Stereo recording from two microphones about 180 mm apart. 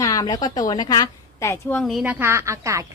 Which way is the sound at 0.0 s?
20° left (ahead or behind).